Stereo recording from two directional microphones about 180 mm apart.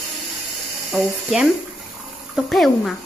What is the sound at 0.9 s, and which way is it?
Speech, centre (ahead or behind).